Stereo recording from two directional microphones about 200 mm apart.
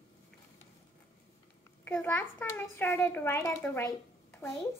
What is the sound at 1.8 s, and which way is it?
A child's voice, 10° left (ahead or behind).